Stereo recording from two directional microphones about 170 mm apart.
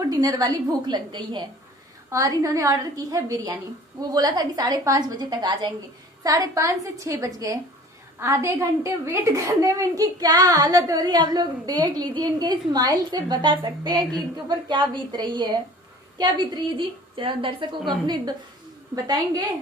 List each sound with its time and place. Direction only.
0.1 s a woman's voice: 20° right (ahead or behind)